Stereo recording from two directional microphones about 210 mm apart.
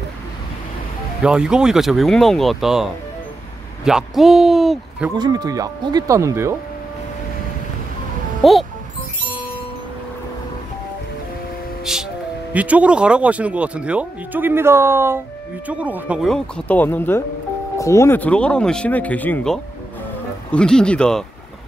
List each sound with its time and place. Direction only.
1.2 s speech: 5° right (ahead or behind)
5.1 s speech: 20° right (ahead or behind)
8.4 s speech: centre (ahead or behind)
11.8 s music: centre (ahead or behind)
12.5 s speech: 5° right (ahead or behind)